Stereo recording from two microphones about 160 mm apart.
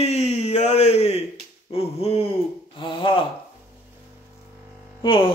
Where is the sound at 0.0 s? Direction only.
45° left (ahead or behind).